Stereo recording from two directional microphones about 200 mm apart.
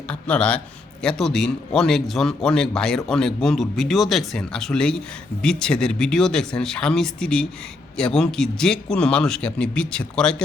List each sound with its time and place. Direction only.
0.1 s a man's voice: 5° left (ahead or behind)